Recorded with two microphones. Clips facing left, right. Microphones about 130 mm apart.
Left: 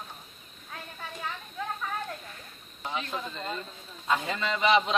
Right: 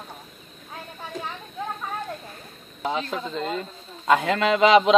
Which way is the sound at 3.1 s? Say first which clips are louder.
Right 7 dB; 80° right.